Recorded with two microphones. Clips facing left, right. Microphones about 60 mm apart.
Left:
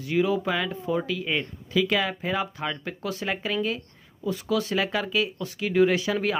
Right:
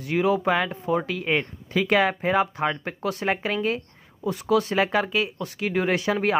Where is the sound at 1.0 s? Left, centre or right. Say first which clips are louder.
Right 3 dB; right.